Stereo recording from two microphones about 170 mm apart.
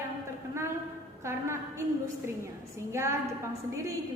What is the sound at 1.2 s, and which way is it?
Speech, 15° right (ahead or behind).